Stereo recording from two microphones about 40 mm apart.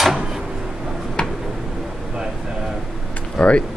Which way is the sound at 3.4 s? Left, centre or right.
Left.